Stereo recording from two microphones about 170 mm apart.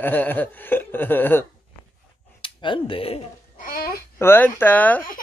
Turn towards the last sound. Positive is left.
turn(degrees=10)  # may be behind; listen again after turning